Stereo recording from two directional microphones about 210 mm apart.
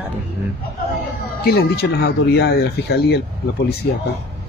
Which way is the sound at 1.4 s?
50° left (ahead or behind).